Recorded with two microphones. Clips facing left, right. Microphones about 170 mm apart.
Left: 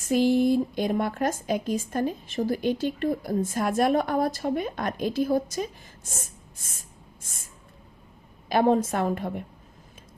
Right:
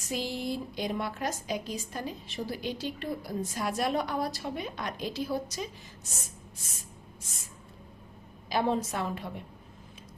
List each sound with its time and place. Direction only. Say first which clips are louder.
0.1 s speech: left 12 dB; 50° left (ahead or behind)
6.1 s a sound: left 6 dB; 50° left (ahead or behind)
8.4 s speech: left 7 dB; 50° left (ahead or behind)